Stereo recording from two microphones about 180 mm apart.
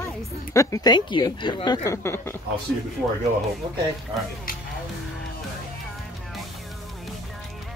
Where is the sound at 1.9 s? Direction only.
15° left (ahead or behind).